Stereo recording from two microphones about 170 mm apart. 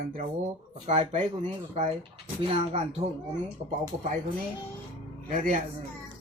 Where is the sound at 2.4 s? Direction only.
40° right (ahead or behind).